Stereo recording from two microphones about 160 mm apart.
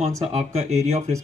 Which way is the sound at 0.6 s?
40° right (ahead or behind).